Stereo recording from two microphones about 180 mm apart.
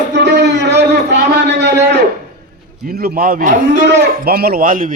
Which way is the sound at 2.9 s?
55° right (ahead or behind).